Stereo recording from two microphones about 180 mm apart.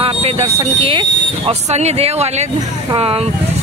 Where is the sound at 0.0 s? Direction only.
35° right (ahead or behind).